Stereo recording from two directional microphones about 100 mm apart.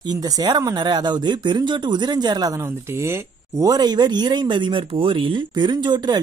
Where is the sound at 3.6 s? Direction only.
45° right (ahead or behind).